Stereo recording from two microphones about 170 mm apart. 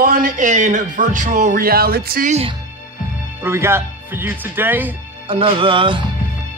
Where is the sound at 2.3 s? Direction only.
35° right (ahead or behind).